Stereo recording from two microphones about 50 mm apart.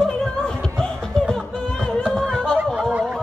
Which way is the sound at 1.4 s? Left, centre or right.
Centre.